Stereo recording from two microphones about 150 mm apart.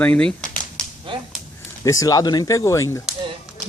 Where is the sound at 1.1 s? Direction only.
35° right (ahead or behind).